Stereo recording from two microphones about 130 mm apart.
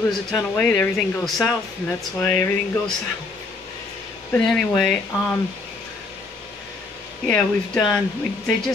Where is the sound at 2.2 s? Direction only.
15° left (ahead or behind).